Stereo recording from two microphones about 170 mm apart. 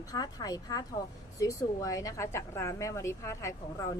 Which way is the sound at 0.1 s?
20° left (ahead or behind).